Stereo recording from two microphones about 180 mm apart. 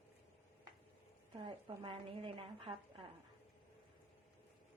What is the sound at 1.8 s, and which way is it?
Speech, 30° right (ahead or behind).